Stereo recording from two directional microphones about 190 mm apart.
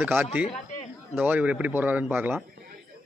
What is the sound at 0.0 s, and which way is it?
A man's voice, 10° right (ahead or behind).